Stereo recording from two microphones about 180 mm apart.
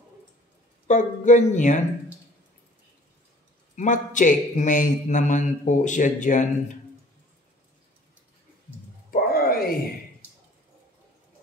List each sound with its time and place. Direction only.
0.8 s a man's voice: 45° left (ahead or behind)
3.7 s a man's voice: 45° left (ahead or behind)
9.1 s a sound: 55° left (ahead or behind)